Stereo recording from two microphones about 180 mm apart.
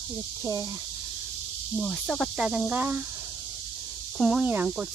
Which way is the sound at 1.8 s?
5° left (ahead or behind).